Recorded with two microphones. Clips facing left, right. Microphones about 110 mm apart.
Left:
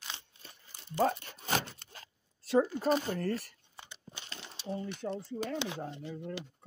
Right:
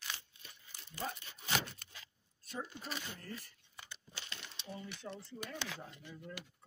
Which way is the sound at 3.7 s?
20° left (ahead or behind).